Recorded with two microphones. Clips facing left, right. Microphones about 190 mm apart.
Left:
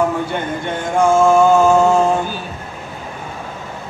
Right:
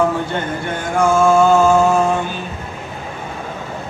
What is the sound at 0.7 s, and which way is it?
Mantra, 20° left (ahead or behind).